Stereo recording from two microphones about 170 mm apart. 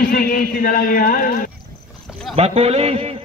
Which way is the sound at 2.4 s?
35° right (ahead or behind).